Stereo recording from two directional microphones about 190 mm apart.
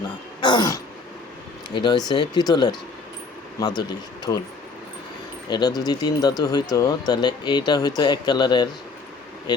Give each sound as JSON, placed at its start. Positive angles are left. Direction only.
{"t": 0.4, "sound": "throat clearing", "side_deg": 20}
{"t": 1.7, "sound": "speech", "side_deg": 25}
{"t": 5.5, "sound": "speech", "side_deg": 20}